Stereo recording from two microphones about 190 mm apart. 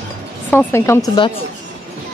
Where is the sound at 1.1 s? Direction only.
25° left (ahead or behind).